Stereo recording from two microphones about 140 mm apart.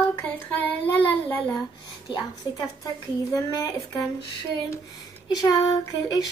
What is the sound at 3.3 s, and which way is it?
Child singing, 25° left (ahead or behind).